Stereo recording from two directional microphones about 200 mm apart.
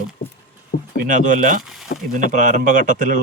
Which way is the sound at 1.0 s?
40° right (ahead or behind).